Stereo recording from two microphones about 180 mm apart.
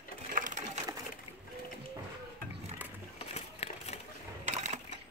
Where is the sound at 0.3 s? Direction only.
45° right (ahead or behind).